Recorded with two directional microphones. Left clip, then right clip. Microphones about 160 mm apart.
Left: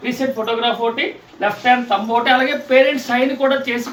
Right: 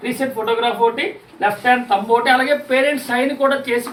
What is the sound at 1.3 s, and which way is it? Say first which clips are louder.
A man's voice: even; 15° left (ahead or behind).